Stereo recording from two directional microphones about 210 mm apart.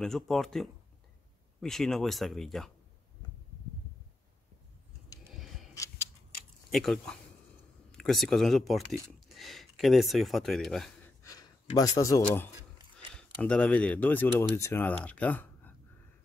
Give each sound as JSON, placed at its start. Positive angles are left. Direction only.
{"t": 0.0, "sound": "speech", "side_deg": 0}
{"t": 5.8, "sound": "a sound", "side_deg": 10}
{"t": 6.7, "sound": "speech", "side_deg": 0}
{"t": 11.2, "sound": "speech", "side_deg": 15}
{"t": 13.1, "sound": "speech", "side_deg": 5}